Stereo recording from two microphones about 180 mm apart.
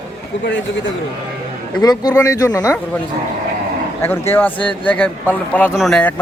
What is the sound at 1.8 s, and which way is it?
Speech, 20° left (ahead or behind).